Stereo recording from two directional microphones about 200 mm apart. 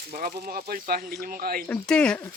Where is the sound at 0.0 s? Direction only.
45° right (ahead or behind).